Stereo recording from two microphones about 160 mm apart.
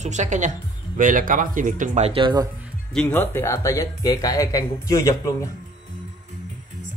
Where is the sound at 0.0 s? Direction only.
50° right (ahead or behind); by 2.4 s 30° right (ahead or behind).